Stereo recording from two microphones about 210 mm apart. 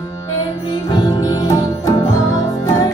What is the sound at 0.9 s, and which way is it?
Music, 20° left (ahead or behind).